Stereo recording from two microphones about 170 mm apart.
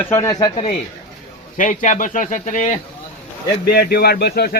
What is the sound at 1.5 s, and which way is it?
Speech, 50° left (ahead or behind).